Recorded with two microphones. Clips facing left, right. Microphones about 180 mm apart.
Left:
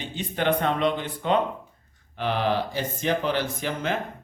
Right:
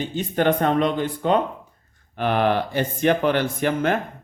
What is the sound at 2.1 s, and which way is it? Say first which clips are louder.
Speech: right 4 dB; 55° right (ahead or behind).